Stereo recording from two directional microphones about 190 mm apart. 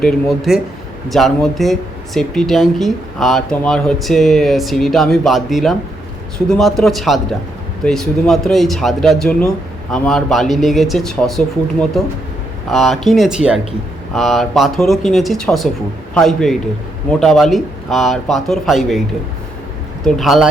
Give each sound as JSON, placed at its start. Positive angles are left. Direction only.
{"t": 0.0, "sound": "speech", "side_deg": 0}
{"t": 20.1, "sound": "speech", "side_deg": 0}